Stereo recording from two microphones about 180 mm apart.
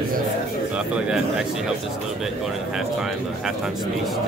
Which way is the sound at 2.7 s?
5° right (ahead or behind).